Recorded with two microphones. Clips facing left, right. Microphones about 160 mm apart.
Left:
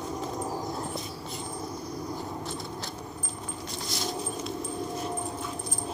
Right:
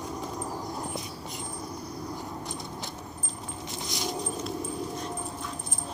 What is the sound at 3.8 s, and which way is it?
Dog, 15° right (ahead or behind).